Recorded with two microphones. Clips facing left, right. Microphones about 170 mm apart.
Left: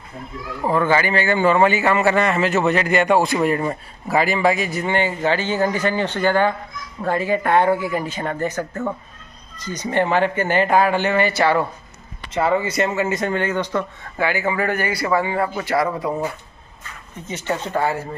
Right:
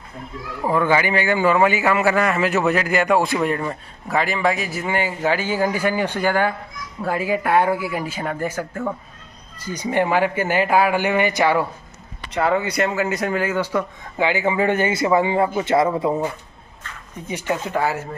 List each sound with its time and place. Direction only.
0.7 s a man's voice: 10° right (ahead or behind)
12.4 s speech: centre (ahead or behind); by 16.2 s 25° right (ahead or behind)
17.3 s a man's voice: 10° right (ahead or behind)